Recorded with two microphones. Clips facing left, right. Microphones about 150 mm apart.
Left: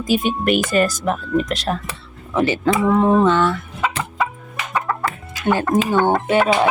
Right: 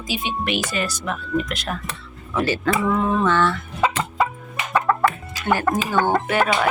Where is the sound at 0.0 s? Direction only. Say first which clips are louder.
Left 8 dB; 45° left (ahead or behind).